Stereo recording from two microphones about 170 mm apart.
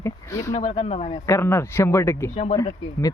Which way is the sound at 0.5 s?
35° left (ahead or behind).